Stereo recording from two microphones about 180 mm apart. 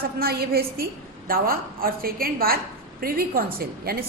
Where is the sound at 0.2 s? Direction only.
55° right (ahead or behind).